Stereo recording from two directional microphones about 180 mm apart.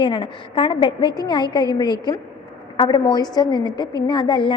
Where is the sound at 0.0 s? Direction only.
30° left (ahead or behind).